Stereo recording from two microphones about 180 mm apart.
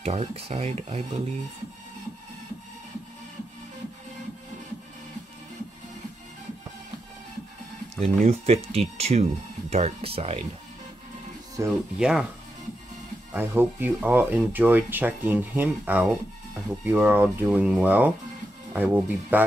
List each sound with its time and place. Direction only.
0.0 s speech: 35° right (ahead or behind)
8.3 s speech: 35° right (ahead or behind)
11.6 s speech: 15° right (ahead or behind)
12.0 s speech: 5° right (ahead or behind)
13.3 s speech: 10° right (ahead or behind)